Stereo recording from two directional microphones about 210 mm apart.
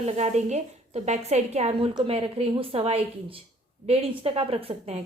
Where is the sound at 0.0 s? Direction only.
35° right (ahead or behind).